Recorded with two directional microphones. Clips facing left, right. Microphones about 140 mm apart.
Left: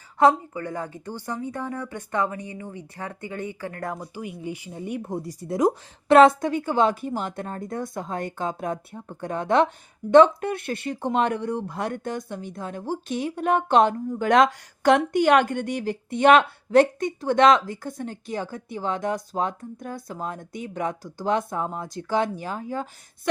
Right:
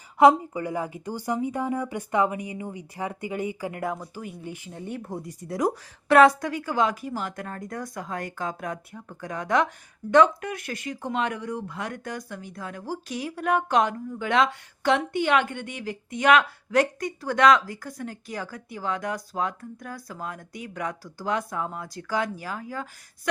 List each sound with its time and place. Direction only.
0.2 s a woman's voice: 10° right (ahead or behind)
4.0 s speech: 10° left (ahead or behind)
5.2 s speech: 35° left (ahead or behind)